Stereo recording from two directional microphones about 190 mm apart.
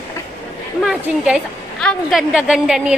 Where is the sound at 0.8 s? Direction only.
5° right (ahead or behind).